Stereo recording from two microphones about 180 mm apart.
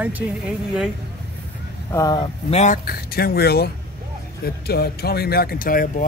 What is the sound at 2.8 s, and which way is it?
Speech, 55° left (ahead or behind).